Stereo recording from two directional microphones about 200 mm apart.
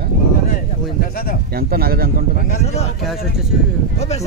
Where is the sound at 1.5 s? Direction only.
50° right (ahead or behind).